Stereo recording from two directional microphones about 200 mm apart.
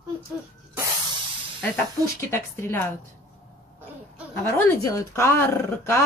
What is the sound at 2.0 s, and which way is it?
Speech, 15° left (ahead or behind).